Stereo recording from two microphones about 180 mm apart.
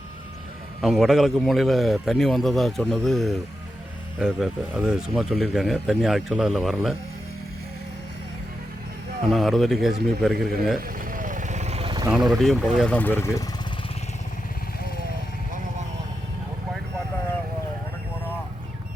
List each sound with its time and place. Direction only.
0.8 s speech: centre (ahead or behind)
9.3 s speech: centre (ahead or behind)
10.8 s vehicle: 50° right (ahead or behind); by 12.1 s 25° right (ahead or behind)
12.1 s speech: centre (ahead or behind); by 13.4 s 15° left (ahead or behind)